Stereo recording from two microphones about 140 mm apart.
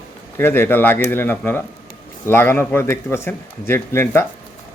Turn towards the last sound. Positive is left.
turn(degrees=15)  # may be behind; listen again after turning